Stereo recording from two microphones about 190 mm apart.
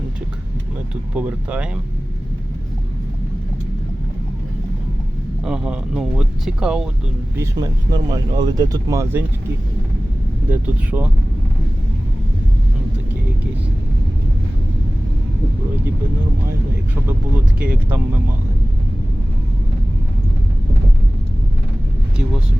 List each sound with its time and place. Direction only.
1.1 s speech: 5° right (ahead or behind)
5.4 s speech: 5° right (ahead or behind)
7.3 s speech: 15° right (ahead or behind)
10.5 s speech: 10° right (ahead or behind)
17.6 s speech: 10° right (ahead or behind)